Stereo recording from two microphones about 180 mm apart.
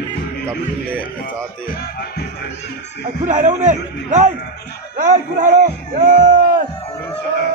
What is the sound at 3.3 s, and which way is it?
A man's voice, 45° right (ahead or behind).